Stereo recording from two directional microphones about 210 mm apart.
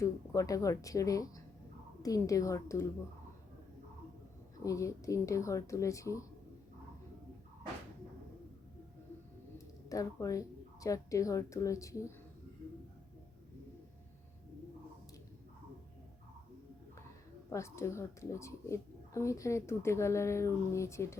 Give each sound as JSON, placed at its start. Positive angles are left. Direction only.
{"t": 0.0, "sound": "a woman's voice", "side_deg": 15}
{"t": 4.6, "sound": "a woman's voice", "side_deg": 15}
{"t": 9.9, "sound": "a woman's voice", "side_deg": 15}
{"t": 17.5, "sound": "a woman's voice", "side_deg": 15}